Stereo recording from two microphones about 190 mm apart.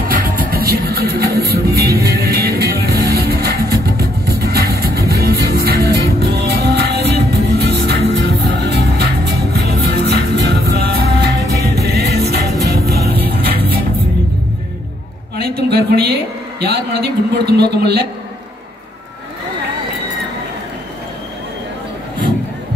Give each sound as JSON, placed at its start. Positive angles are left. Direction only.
{"t": 0.1, "sound": "music", "side_deg": -50}
{"t": 15.7, "sound": "a sound", "side_deg": -60}
{"t": 17.5, "sound": "a man's voice", "side_deg": -60}